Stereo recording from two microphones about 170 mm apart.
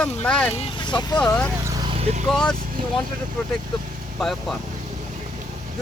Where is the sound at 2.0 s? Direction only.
35° right (ahead or behind).